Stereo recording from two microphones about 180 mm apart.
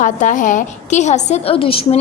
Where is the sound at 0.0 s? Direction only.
45° left (ahead or behind).